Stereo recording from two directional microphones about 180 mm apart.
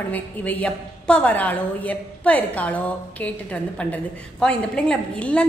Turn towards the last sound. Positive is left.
turn(degrees=5)  # may be behind; listen again after turning